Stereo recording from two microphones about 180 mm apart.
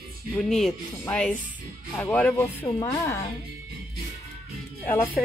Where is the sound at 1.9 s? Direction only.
10° left (ahead or behind).